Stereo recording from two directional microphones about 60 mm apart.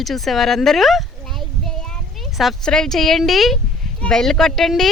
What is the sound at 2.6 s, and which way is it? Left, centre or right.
Speech, centre.